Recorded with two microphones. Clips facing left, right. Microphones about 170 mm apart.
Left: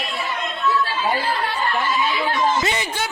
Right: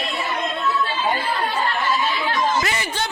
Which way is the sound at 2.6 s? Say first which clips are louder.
Left 2 dB; 20° left (ahead or behind).